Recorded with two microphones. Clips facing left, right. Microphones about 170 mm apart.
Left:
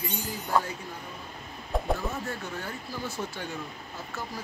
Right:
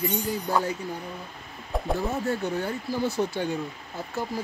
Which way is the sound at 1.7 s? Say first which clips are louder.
Even; centre (ahead or behind).